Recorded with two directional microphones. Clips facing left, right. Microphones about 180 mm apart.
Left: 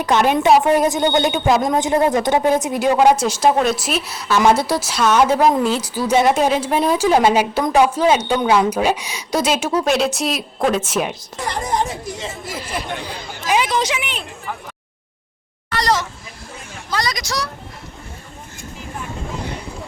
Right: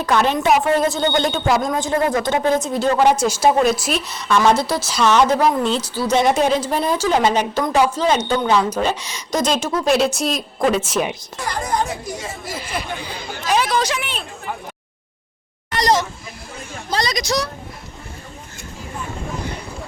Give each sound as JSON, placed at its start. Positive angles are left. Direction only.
{"t": 0.0, "sound": "speech", "side_deg": 15}
{"t": 0.4, "sound": "speech", "side_deg": 25}
{"t": 0.7, "sound": "speech", "side_deg": 15}
{"t": 3.2, "sound": "speech", "side_deg": 0}
{"t": 11.3, "sound": "speech", "side_deg": 25}
{"t": 12.5, "sound": "speech", "side_deg": 0}
{"t": 13.5, "sound": "a sound", "side_deg": 20}
{"t": 13.9, "sound": "speech", "side_deg": 15}
{"t": 15.8, "sound": "speech", "side_deg": -15}